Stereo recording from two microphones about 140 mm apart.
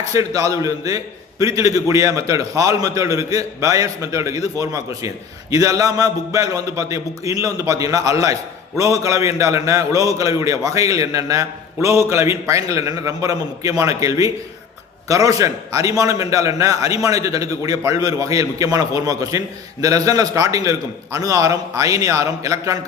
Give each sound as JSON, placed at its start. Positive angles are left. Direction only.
{"t": 0.1, "sound": "a man's voice", "side_deg": -25}